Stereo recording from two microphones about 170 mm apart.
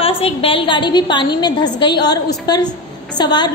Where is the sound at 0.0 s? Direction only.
35° left (ahead or behind).